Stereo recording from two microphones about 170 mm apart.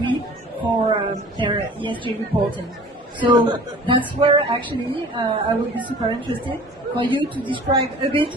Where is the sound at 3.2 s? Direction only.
30° right (ahead or behind).